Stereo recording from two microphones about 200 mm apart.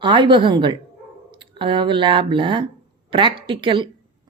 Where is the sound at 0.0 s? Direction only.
25° right (ahead or behind).